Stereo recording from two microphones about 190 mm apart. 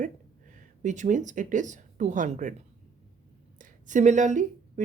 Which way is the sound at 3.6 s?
40° right (ahead or behind).